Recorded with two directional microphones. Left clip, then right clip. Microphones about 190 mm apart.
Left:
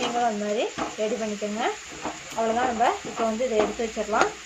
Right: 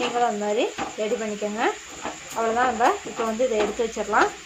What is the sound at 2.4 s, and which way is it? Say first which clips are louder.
Speech: right 1 dB; 35° right (ahead or behind).